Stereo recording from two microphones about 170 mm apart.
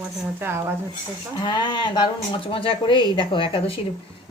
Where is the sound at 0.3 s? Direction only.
15° right (ahead or behind).